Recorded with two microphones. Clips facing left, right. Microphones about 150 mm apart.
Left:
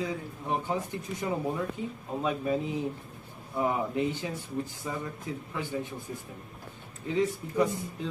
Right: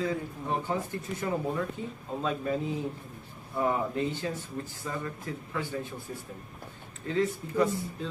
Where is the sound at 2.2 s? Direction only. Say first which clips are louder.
Left 1 dB; 15° left (ahead or behind).